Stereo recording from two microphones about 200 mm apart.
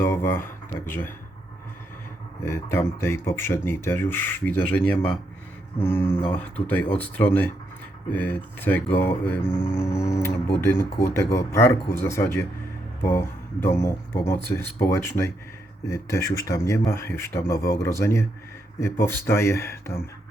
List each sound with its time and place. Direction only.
0.0 s speech: 10° left (ahead or behind)
2.4 s speech: 10° left (ahead or behind)